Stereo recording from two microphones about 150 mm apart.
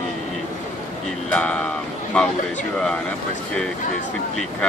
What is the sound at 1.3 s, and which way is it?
Speech, 10° left (ahead or behind).